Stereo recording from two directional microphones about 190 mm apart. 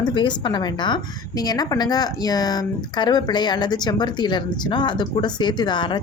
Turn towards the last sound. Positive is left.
turn(degrees=25)  # may be behind; listen again after turning